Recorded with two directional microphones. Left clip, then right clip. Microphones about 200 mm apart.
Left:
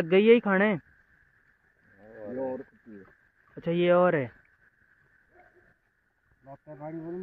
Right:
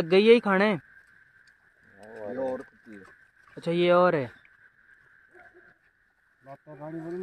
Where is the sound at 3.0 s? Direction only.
15° right (ahead or behind).